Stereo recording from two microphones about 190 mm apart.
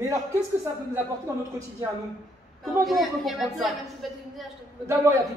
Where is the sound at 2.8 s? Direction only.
Centre (ahead or behind).